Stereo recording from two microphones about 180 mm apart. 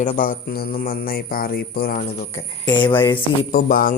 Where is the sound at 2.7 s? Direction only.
25° left (ahead or behind).